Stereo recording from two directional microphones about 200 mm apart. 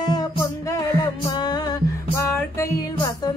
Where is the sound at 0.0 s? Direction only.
20° left (ahead or behind).